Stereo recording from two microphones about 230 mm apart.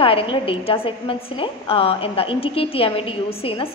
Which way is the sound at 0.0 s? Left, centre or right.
Left.